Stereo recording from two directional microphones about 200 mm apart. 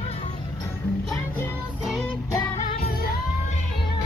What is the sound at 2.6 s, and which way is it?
Music, 45° left (ahead or behind).